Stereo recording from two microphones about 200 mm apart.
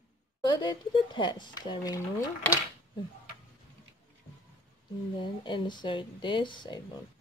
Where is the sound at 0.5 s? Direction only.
20° left (ahead or behind).